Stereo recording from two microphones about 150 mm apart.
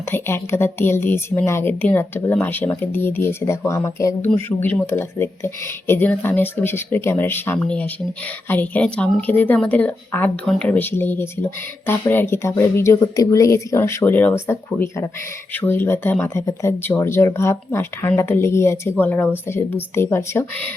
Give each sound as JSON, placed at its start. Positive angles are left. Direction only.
{"t": 0.1, "sound": "speech", "side_deg": 15}